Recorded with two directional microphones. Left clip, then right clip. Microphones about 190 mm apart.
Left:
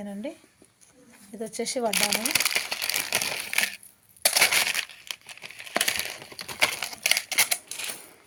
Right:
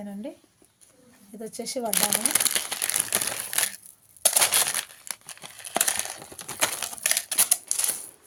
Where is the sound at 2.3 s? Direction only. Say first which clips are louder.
Left 3 dB; 15° right (ahead or behind).